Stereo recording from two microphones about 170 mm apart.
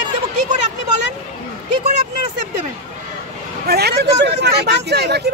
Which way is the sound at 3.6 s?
70° right (ahead or behind).